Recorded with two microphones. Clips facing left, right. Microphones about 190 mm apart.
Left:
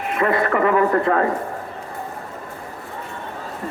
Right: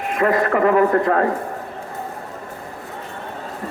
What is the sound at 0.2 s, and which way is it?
A man's voice, 40° right (ahead or behind).